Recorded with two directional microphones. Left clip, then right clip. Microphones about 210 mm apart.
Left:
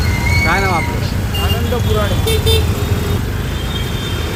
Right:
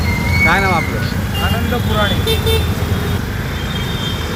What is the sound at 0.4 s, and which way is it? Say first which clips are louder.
Speech: right 3 dB; 10° right (ahead or behind).